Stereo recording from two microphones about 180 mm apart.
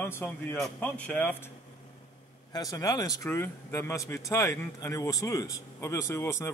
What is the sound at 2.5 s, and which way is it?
A man's voice, 20° left (ahead or behind).